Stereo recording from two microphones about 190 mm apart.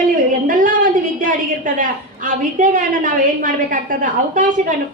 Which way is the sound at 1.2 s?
45° right (ahead or behind).